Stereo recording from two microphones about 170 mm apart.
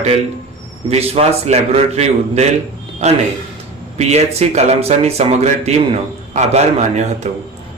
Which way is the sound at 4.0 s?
40° right (ahead or behind).